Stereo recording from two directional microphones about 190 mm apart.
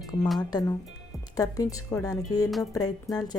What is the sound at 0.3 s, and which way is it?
A woman's voice, 20° left (ahead or behind).